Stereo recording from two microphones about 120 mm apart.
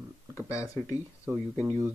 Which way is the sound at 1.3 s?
10° right (ahead or behind).